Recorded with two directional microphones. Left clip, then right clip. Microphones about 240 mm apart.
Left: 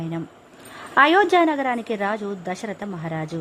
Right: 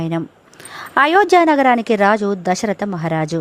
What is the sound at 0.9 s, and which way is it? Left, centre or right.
A woman's voice, right.